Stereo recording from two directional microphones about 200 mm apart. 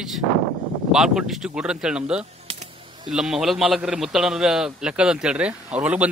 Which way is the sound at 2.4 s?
30° right (ahead or behind).